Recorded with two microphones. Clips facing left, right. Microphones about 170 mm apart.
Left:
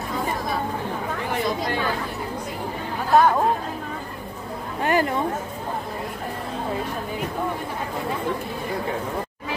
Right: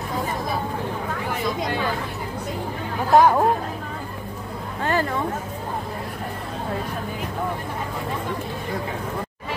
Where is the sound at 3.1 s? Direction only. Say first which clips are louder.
Right 2 dB; 10° right (ahead or behind).